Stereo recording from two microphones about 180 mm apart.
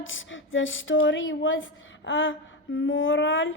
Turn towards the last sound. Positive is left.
turn(degrees=90)